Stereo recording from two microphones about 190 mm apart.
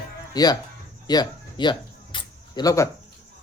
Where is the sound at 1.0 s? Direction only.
20° left (ahead or behind).